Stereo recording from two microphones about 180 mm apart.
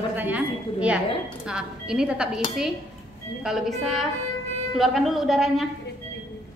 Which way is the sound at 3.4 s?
Centre (ahead or behind).